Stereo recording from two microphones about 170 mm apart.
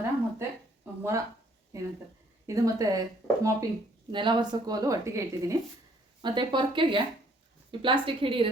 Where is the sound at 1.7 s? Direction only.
20° right (ahead or behind).